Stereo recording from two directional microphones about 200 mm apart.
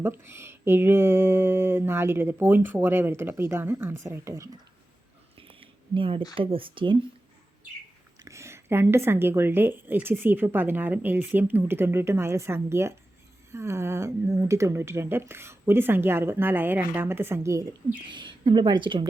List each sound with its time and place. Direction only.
0.0 s a woman's voice: 10° right (ahead or behind)
5.4 s a sound: 25° right (ahead or behind)
6.3 s speech: 25° right (ahead or behind)
8.2 s a woman's voice: 15° right (ahead or behind)